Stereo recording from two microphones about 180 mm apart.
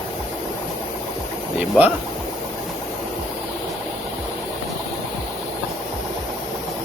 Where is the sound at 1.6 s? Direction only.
10° right (ahead or behind).